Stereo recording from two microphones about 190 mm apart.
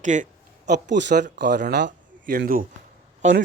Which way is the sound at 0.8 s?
65° right (ahead or behind).